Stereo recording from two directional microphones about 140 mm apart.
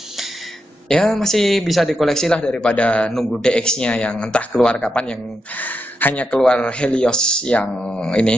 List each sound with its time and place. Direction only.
0.8 s a man's voice: 5° left (ahead or behind)